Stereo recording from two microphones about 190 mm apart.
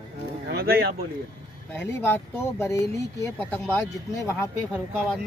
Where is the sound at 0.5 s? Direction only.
55° right (ahead or behind).